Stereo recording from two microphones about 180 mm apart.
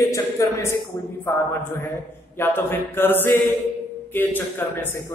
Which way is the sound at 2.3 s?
15° left (ahead or behind).